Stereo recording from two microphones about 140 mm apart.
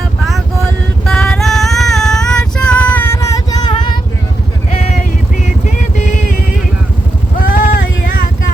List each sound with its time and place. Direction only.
1.0 s child singing: 5° left (ahead or behind); by 3.9 s 35° left (ahead or behind)
7.4 s vehicle: 75° left (ahead or behind)